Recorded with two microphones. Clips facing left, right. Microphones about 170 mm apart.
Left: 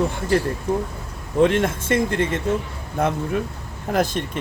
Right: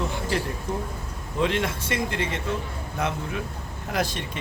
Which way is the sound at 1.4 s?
50° left (ahead or behind).